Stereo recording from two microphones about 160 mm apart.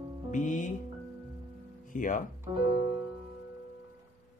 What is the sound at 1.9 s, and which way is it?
Speech, 55° left (ahead or behind).